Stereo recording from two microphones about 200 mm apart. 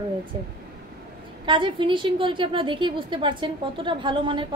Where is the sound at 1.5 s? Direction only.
25° right (ahead or behind).